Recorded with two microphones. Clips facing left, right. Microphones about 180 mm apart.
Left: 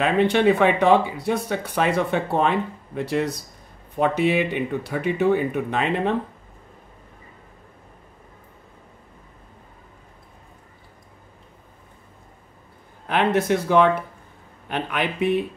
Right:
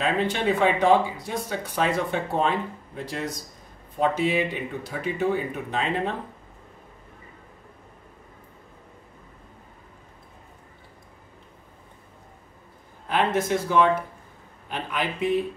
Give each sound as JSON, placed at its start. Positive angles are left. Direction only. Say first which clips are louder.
{"t": 0.0, "sound": "speech", "louder": "left 6 dB", "side_deg": 65}
{"t": 13.1, "sound": "speech", "louder": "left 3 dB", "side_deg": 65}